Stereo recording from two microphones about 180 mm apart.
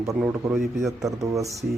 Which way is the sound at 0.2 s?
15° right (ahead or behind).